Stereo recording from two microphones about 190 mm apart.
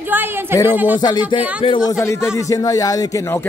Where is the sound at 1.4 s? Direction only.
10° right (ahead or behind).